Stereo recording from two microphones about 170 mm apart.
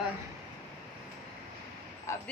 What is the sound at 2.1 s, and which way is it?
Speech, 20° left (ahead or behind).